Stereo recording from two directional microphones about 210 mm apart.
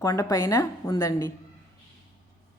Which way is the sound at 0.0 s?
15° left (ahead or behind).